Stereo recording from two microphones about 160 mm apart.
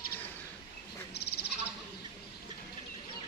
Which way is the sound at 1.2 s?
90° left.